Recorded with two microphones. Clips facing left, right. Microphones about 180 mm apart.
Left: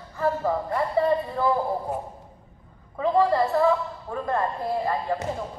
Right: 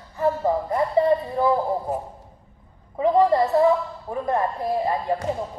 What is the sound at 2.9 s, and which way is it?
A woman's voice, 20° right (ahead or behind).